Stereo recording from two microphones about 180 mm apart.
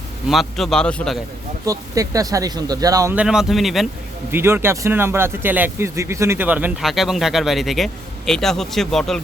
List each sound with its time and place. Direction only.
0.3 s a man's voice: centre (ahead or behind)
1.6 s speech: 20° right (ahead or behind)
3.2 s a man's voice: 5° right (ahead or behind)
4.3 s a man's voice: 10° right (ahead or behind)